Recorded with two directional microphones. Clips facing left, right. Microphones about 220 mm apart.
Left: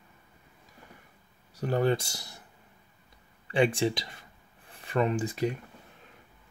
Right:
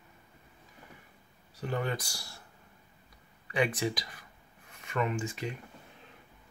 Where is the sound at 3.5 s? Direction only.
30° left (ahead or behind).